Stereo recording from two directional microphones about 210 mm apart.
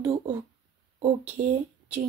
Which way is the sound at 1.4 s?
30° right (ahead or behind).